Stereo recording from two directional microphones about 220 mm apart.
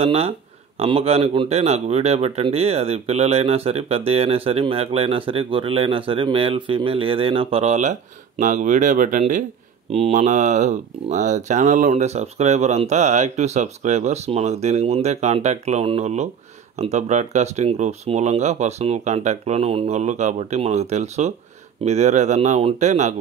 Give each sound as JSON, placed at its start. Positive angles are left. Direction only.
{"t": 0.0, "sound": "speech", "side_deg": -25}